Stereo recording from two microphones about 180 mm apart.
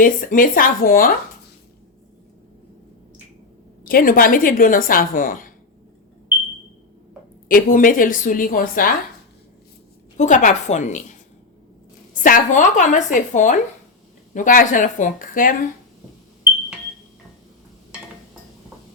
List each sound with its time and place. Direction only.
0.0 s a woman's voice: 50° left (ahead or behind)
3.8 s a woman's voice: 50° left (ahead or behind)
7.4 s a woman's voice: 50° left (ahead or behind)
10.2 s a woman's voice: 45° left (ahead or behind)
12.2 s a woman's voice: 45° left (ahead or behind)